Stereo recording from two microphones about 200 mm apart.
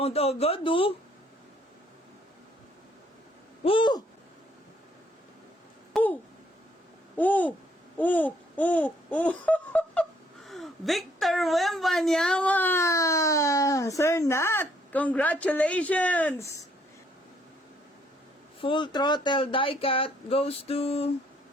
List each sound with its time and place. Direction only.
0.0 s speech: 30° left (ahead or behind)
3.6 s speech: 25° left (ahead or behind)
5.9 s a sound: 10° left (ahead or behind)
7.2 s babbling: 10° left (ahead or behind)
18.6 s speech: 25° left (ahead or behind)